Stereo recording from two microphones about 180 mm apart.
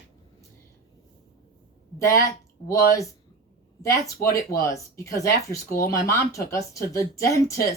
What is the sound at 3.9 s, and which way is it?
Speech, 15° left (ahead or behind).